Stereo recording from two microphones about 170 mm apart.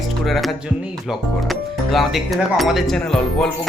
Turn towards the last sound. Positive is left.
turn(degrees=5)  # may be behind; listen again after turning